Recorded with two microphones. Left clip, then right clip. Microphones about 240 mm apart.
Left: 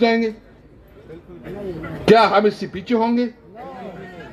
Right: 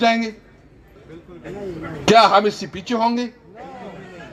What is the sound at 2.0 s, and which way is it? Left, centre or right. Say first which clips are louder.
A man's voice: right 1 dB; right.